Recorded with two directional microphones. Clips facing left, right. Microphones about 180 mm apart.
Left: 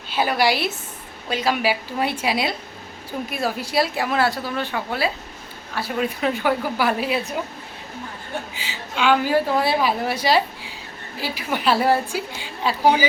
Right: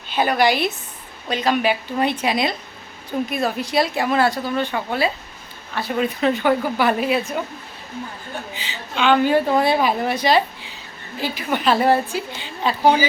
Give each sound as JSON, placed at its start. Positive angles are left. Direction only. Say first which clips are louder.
{"t": 0.1, "sound": "a woman's voice", "louder": "right 2 dB", "side_deg": 5}
{"t": 8.5, "sound": "a woman's voice", "louder": "right 1 dB", "side_deg": 5}